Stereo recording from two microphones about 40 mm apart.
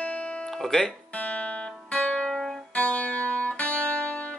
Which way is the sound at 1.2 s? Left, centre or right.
Left.